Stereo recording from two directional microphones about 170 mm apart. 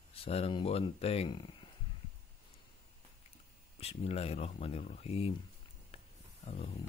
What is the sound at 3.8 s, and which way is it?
Speech, 35° left (ahead or behind).